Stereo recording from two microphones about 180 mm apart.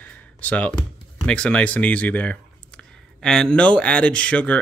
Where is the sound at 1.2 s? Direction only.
5° left (ahead or behind).